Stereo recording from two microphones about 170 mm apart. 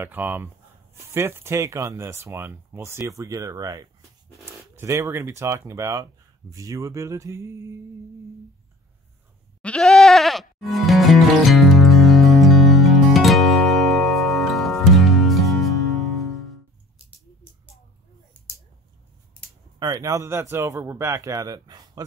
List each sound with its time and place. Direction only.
0.0 s speech: 10° right (ahead or behind)
9.6 s music: 5° left (ahead or behind)
19.8 s a man's voice: 20° right (ahead or behind)